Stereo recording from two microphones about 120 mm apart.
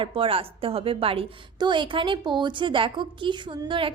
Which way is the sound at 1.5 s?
40° right (ahead or behind).